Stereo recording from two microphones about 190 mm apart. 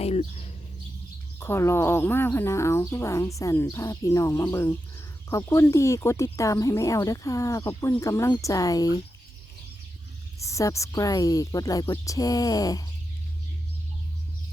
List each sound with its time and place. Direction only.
0.0 s bird: 30° left (ahead or behind)
1.4 s speech: 15° left (ahead or behind)
10.4 s speech: 15° left (ahead or behind)